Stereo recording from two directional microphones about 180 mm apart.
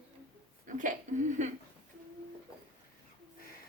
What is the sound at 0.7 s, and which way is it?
Speech, 45° right (ahead or behind).